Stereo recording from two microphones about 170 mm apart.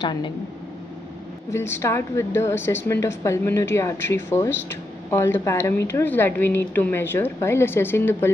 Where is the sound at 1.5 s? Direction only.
15° left (ahead or behind).